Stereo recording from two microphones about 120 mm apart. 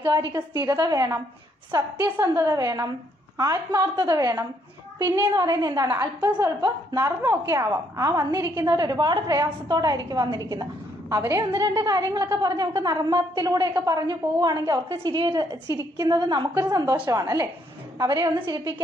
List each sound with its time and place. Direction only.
0.0 s a woman's voice: 35° right (ahead or behind)